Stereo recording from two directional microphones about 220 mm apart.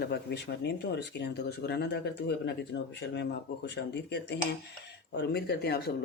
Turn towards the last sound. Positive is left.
turn(degrees=45)  # may be behind; listen again after turning